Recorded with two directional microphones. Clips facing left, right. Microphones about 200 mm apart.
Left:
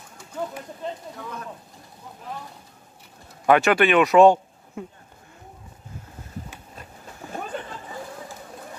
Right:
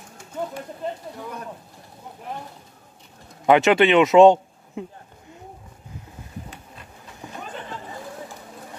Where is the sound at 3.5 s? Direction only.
20° right (ahead or behind).